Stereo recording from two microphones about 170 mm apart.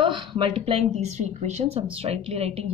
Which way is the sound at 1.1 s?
45° right (ahead or behind).